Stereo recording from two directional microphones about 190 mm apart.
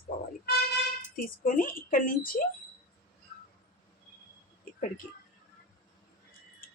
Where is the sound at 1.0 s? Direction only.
45° left (ahead or behind).